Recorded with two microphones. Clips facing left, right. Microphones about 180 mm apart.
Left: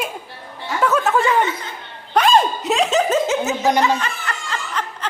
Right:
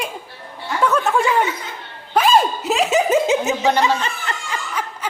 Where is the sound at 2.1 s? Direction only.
5° right (ahead or behind).